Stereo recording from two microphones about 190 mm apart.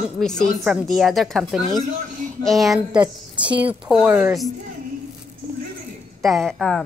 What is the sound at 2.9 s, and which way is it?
Speech, 25° right (ahead or behind).